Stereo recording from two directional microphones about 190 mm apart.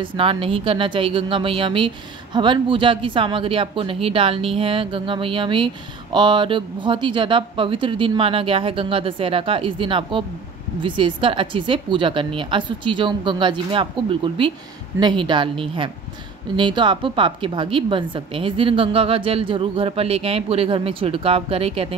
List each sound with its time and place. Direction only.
0.0 s a woman's voice: 25° right (ahead or behind)